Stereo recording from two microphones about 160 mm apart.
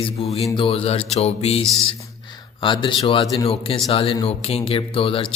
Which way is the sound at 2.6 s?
30° left (ahead or behind).